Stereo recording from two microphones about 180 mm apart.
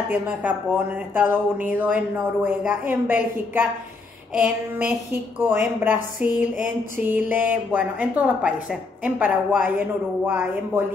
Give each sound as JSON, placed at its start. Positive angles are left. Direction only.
{"t": 0.1, "sound": "a woman's voice", "side_deg": -10}
{"t": 6.2, "sound": "a sound", "side_deg": 45}
{"t": 7.0, "sound": "a woman's voice", "side_deg": -10}